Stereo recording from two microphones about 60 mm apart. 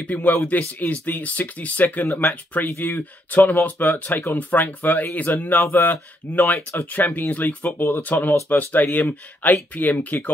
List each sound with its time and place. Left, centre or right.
0.1 s speech: left